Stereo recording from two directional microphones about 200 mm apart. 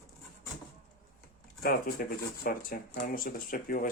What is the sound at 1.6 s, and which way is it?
Speech, 50° left (ahead or behind).